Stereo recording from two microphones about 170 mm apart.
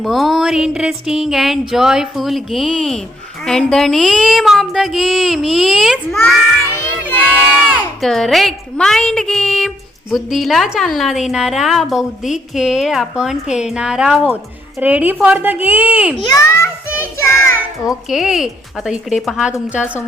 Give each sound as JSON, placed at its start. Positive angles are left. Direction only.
{"t": 0.0, "sound": "a woman's voice", "side_deg": 0}
{"t": 7.7, "sound": "a woman's voice", "side_deg": 0}
{"t": 16.2, "sound": "a child's voice", "side_deg": 20}
{"t": 18.1, "sound": "a woman's voice", "side_deg": 0}